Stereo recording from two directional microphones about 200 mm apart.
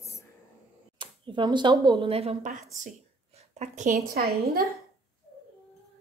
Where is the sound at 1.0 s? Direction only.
25° right (ahead or behind); by 4.2 s 40° right (ahead or behind).